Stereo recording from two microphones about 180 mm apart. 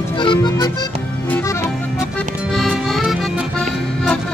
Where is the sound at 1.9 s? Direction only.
Centre (ahead or behind).